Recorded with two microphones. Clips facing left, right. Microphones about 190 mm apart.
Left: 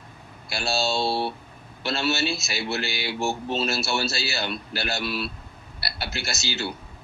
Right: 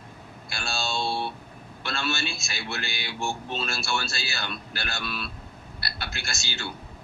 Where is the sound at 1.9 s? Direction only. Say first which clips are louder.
Left 6 dB; 20° left (ahead or behind).